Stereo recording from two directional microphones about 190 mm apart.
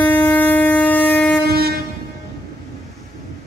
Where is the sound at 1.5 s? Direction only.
55° right (ahead or behind).